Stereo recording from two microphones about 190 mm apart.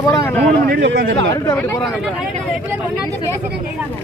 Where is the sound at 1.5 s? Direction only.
10° left (ahead or behind).